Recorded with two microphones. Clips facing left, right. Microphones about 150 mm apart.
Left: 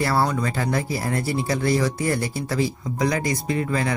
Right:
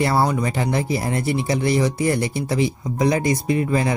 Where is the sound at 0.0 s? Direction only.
20° right (ahead or behind).